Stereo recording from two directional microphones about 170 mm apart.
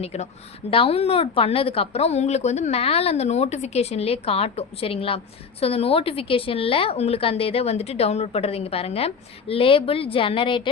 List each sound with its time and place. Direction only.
0.0 s speech: 40° left (ahead or behind)